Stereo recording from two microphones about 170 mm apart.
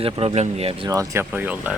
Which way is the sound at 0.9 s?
15° right (ahead or behind).